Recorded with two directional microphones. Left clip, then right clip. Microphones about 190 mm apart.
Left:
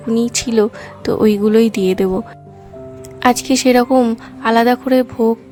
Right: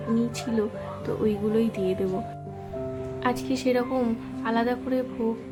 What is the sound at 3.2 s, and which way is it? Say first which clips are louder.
Speech: left 14 dB; 60° left (ahead or behind).